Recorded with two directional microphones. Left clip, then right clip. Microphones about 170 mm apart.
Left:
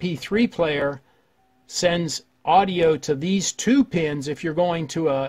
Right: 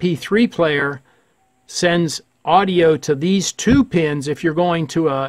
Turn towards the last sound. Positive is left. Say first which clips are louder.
# right 4 dB
turn(degrees=-30)  # may be behind; listen again after turning